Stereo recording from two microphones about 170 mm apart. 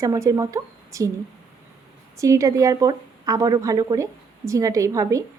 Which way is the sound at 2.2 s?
20° right (ahead or behind).